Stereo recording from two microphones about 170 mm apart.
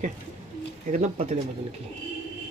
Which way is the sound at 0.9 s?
45° right (ahead or behind).